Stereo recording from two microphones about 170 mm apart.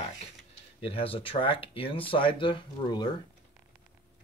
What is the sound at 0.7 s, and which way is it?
Speech, 35° left (ahead or behind).